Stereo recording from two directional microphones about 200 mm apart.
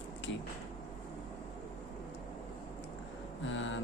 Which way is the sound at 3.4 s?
70° left (ahead or behind).